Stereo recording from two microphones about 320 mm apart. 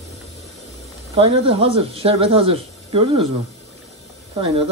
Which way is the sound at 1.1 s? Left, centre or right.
Centre.